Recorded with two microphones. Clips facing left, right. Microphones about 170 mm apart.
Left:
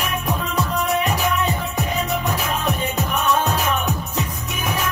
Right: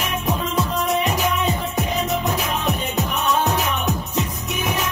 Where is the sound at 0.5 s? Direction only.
20° right (ahead or behind).